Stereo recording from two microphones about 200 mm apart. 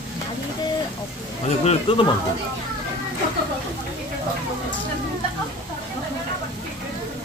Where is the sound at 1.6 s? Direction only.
35° left (ahead or behind).